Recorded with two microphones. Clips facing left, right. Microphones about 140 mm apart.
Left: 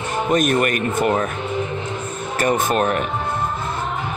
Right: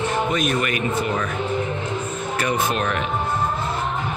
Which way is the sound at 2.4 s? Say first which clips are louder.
Left 5 dB; 45° left (ahead or behind).